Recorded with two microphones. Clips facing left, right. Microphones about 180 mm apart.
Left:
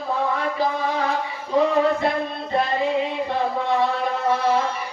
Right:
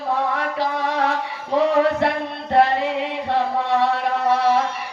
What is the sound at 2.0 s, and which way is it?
Music, 70° right (ahead or behind).